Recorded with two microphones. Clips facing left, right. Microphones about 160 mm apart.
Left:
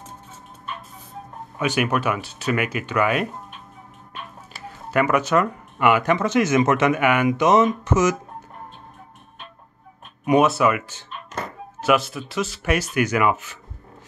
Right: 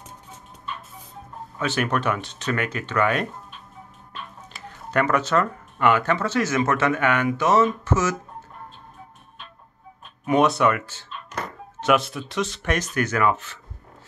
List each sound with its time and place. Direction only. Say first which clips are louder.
1.6 s speech: left 2 dB; 10° left (ahead or behind)
4.6 s speech: left 2 dB; 10° left (ahead or behind)
10.4 s speech: left 1 dB; 5° left (ahead or behind)
11.8 s speech: left 1 dB; centre (ahead or behind)